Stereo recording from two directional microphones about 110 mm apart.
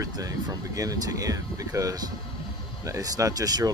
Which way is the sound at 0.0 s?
30° right (ahead or behind).